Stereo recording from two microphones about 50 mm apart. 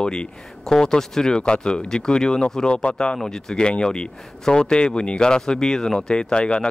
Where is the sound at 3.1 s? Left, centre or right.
Centre.